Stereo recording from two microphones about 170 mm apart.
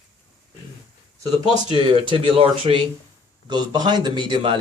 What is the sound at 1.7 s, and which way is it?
A man's voice, 30° right (ahead or behind).